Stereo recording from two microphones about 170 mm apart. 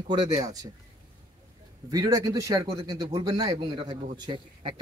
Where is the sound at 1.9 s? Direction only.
20° right (ahead or behind).